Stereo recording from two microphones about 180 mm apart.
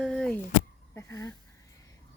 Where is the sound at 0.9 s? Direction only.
15° left (ahead or behind).